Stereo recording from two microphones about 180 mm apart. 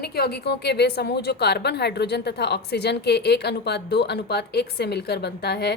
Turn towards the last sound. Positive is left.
turn(degrees=65)  # may be behind; listen again after turning